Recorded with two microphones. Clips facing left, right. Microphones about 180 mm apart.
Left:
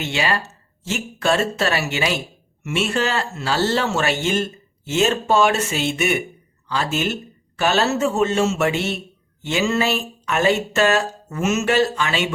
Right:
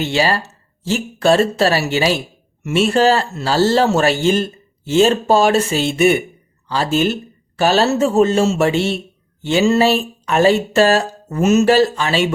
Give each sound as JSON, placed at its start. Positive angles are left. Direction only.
{"t": 0.0, "sound": "speech", "side_deg": -35}